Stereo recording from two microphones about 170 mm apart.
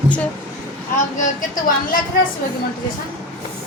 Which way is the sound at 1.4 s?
55° left (ahead or behind).